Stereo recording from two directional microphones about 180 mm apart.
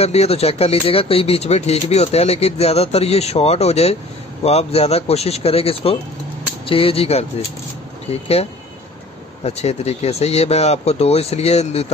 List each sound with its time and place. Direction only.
0.0 s speech: 35° left (ahead or behind)